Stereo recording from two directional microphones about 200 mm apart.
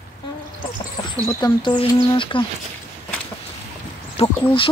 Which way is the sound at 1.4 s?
20° left (ahead or behind).